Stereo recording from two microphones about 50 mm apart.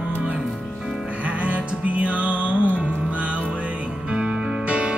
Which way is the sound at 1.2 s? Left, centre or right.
Right.